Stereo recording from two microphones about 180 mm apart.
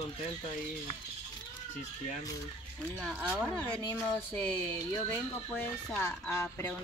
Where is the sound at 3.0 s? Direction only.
5° right (ahead or behind).